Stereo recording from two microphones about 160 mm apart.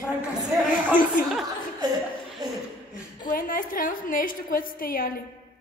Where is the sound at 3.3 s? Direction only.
60° left (ahead or behind).